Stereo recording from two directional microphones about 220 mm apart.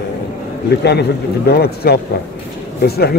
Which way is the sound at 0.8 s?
45° left (ahead or behind).